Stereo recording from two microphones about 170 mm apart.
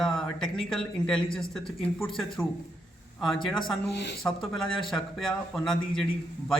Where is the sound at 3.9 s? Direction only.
80° left.